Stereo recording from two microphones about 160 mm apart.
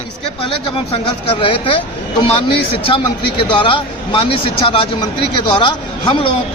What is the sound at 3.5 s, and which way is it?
Speech, 30° left (ahead or behind).